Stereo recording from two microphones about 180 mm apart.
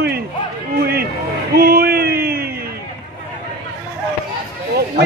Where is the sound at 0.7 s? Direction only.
60° right (ahead or behind).